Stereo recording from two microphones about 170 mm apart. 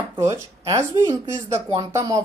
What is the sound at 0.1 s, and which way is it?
Speech, 15° right (ahead or behind).